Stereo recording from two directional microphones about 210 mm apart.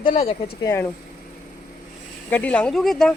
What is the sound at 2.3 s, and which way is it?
Speech, 5° left (ahead or behind).